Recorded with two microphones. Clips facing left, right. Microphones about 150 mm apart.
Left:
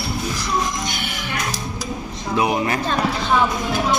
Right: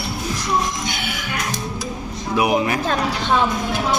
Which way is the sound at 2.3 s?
10° right (ahead or behind).